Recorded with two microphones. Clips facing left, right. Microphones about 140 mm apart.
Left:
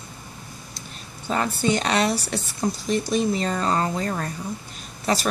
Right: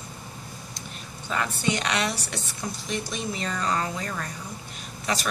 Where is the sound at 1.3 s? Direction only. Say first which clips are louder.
Left 5 dB; 35° left (ahead or behind).